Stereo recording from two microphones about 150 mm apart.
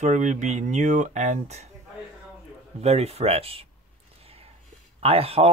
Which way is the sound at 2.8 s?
45° right (ahead or behind).